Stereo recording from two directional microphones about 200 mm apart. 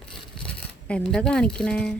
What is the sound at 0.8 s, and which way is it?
Speech, 5° left (ahead or behind).